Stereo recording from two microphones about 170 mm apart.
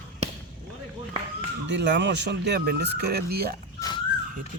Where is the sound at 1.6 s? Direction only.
90° right; by 3.5 s 65° right (ahead or behind).